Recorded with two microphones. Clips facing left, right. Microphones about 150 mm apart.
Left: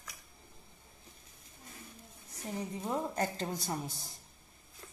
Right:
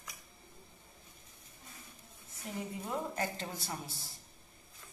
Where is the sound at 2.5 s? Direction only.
35° left (ahead or behind).